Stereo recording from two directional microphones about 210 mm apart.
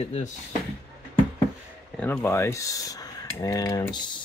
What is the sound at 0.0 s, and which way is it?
Speech, 35° left (ahead or behind).